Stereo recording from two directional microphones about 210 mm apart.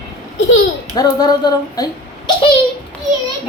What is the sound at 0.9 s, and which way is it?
Speech, 20° left (ahead or behind).